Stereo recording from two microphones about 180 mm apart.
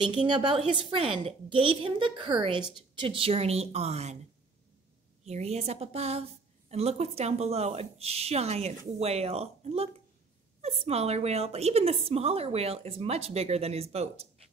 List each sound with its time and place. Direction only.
0.1 s a woman's voice: 25° right (ahead or behind)
5.2 s a woman's voice: 35° right (ahead or behind)